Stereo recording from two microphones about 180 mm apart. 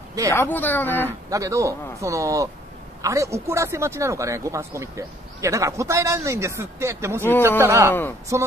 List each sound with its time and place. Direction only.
0.3 s a woman's voice: 10° left (ahead or behind)
1.3 s speech: 15° right (ahead or behind)